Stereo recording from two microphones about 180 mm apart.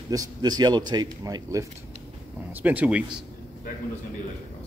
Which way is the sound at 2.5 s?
10° right (ahead or behind).